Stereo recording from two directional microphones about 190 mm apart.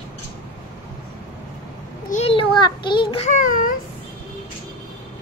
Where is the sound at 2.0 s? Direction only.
35° left (ahead or behind).